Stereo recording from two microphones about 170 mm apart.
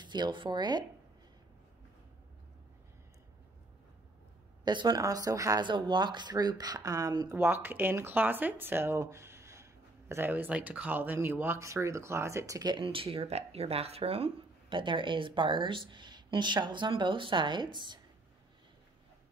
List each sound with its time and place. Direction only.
0.0 s speech: 25° right (ahead or behind)
4.6 s speech: 25° right (ahead or behind)